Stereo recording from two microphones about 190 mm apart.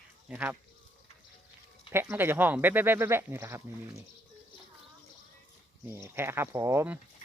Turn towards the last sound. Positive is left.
turn(degrees=-10)  # may be behind; listen again after turning